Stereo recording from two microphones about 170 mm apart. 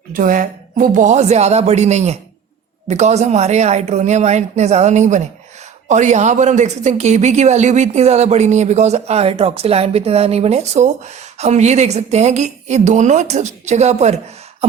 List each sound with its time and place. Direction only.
0.1 s a man's voice: 55° right (ahead or behind)